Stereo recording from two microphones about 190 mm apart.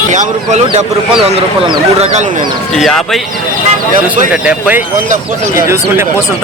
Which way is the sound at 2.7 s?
Centre (ahead or behind).